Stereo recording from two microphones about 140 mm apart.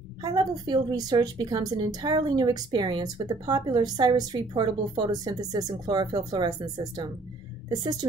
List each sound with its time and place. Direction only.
0.2 s a woman's voice: 30° right (ahead or behind)